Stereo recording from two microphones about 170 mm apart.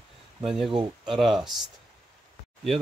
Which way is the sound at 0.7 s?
30° right (ahead or behind).